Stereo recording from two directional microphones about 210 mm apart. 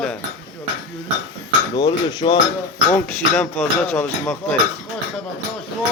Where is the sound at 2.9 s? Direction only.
15° left (ahead or behind).